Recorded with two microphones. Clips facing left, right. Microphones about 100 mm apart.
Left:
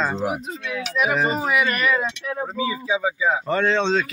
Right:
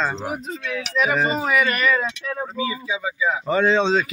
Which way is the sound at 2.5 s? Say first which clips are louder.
Left 5 dB; 30° left (ahead or behind).